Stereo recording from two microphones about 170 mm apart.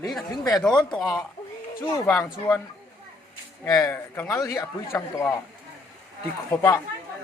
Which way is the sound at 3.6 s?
20° left (ahead or behind).